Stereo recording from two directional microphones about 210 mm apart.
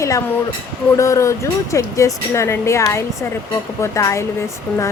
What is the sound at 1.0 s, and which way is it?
Speech, 15° left (ahead or behind).